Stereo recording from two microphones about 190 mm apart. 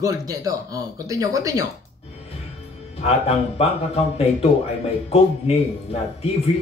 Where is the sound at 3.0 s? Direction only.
35° left (ahead or behind).